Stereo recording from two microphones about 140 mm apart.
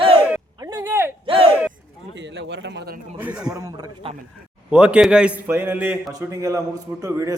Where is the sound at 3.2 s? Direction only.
10° right (ahead or behind).